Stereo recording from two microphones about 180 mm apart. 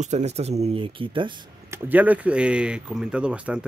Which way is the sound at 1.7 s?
10° right (ahead or behind).